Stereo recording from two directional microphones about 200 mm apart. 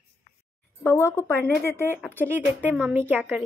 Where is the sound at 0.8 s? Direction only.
10° left (ahead or behind).